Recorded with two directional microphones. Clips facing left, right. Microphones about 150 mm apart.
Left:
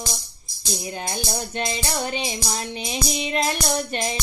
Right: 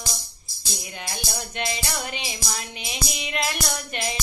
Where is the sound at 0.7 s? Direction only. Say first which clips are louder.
Left 6 dB; 35° left (ahead or behind).